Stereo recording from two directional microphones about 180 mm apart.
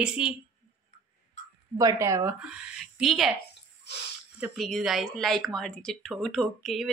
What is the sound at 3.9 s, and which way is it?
Speech, 70° left (ahead or behind).